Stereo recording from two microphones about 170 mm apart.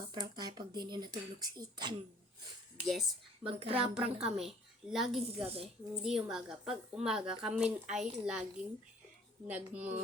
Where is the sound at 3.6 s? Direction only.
35° right (ahead or behind).